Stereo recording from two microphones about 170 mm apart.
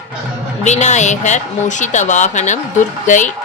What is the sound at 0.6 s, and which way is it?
Speech, 45° left (ahead or behind).